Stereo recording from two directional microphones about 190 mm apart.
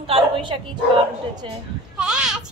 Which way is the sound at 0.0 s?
25° right (ahead or behind).